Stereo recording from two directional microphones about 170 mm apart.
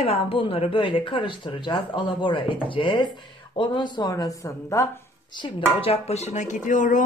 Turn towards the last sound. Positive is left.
turn(degrees=50)  # may be behind; listen again after turning